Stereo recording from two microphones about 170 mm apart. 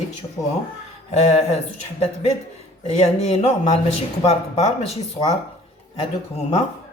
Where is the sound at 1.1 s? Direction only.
40° left (ahead or behind).